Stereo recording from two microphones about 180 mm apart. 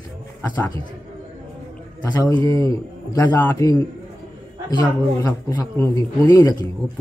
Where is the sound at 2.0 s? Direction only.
20° left (ahead or behind).